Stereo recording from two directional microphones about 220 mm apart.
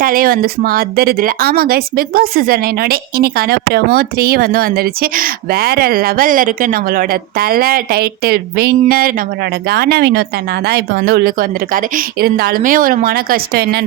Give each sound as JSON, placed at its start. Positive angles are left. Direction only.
{"t": 0.0, "sound": "speech", "side_deg": -40}